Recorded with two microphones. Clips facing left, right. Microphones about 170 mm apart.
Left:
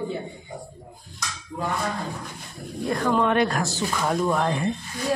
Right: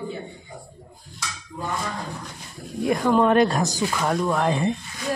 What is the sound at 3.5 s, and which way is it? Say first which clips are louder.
Speech: right 2 dB; 15° right (ahead or behind).